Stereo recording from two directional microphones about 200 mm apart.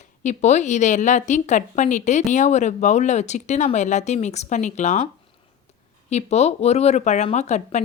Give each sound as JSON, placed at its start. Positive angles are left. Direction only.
{"t": 0.0, "sound": "speech", "side_deg": 35}
{"t": 6.1, "sound": "speech", "side_deg": 35}